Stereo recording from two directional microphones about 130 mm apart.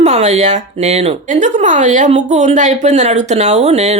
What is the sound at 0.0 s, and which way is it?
A woman's voice, 60° right (ahead or behind).